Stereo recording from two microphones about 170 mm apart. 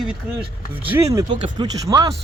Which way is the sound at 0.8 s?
15° right (ahead or behind).